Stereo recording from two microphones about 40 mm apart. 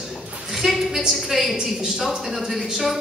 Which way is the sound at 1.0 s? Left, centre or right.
Centre.